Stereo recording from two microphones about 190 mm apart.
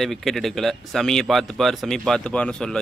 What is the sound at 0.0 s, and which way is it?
Speech, centre (ahead or behind).